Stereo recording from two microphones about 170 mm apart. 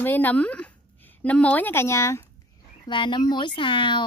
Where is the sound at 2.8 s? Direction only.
25° left (ahead or behind).